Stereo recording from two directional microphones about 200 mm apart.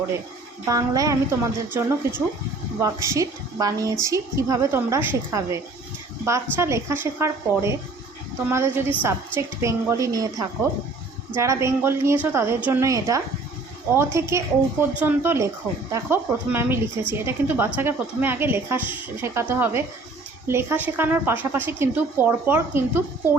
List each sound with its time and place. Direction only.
0.7 s a woman's voice: 15° right (ahead or behind)
6.6 s a woman's voice: 15° right (ahead or behind)